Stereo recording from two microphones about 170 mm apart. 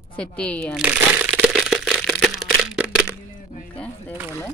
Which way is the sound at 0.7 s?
10° right (ahead or behind).